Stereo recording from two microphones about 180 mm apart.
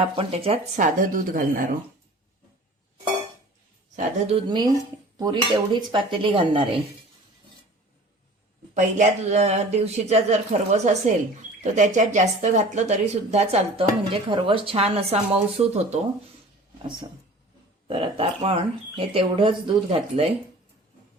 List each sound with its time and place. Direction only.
0.2 s speech: 35° right (ahead or behind)
0.8 s speech: 50° right (ahead or behind)
3.9 s speech: 40° right (ahead or behind)
5.1 s dishes: 20° right (ahead or behind)
5.5 s speech: 25° right (ahead or behind)
8.7 s speech: 40° right (ahead or behind)